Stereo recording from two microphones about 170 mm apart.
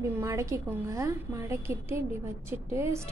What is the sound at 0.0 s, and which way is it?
A woman's voice, 15° right (ahead or behind).